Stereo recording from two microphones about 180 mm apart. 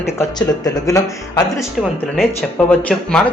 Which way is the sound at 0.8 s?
20° left (ahead or behind).